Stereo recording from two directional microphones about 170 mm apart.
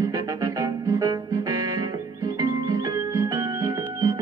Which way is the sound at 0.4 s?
20° right (ahead or behind).